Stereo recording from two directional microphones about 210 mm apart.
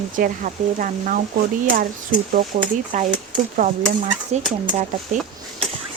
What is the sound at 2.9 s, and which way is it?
Speech, 35° right (ahead or behind).